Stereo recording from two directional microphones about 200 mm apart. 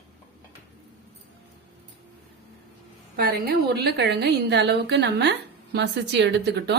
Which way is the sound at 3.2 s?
50° right (ahead or behind).